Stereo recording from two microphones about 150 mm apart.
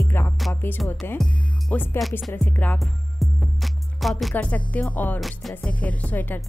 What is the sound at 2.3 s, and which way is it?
Music, 10° left (ahead or behind).